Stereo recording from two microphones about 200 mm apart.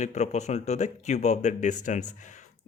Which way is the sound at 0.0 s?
35° left (ahead or behind).